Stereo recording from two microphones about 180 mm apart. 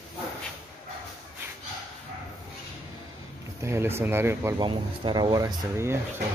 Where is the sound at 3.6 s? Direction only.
15° right (ahead or behind).